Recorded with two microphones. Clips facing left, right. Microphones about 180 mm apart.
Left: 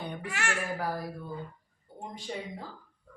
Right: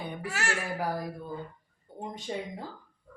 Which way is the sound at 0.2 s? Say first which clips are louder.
Right 4 dB; 40° right (ahead or behind).